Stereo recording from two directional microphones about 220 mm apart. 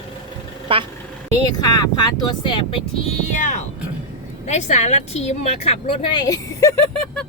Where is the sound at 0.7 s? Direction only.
25° right (ahead or behind).